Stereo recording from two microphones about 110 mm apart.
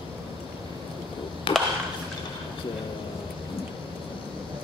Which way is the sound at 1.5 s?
50° left (ahead or behind).